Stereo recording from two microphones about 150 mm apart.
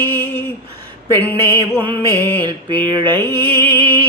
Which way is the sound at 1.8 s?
35° right (ahead or behind).